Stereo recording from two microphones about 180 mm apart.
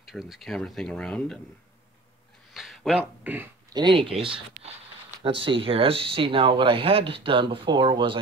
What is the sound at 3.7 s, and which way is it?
Speech, 25° right (ahead or behind).